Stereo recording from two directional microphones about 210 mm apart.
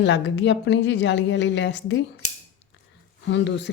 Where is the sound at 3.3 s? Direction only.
55° left (ahead or behind).